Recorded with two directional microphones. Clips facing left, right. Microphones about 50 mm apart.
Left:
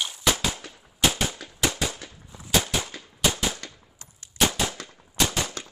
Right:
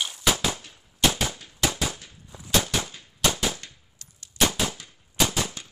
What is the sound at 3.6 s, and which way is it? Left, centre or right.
Gunshot, left.